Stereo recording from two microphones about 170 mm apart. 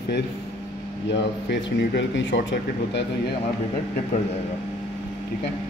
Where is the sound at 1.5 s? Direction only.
90° left.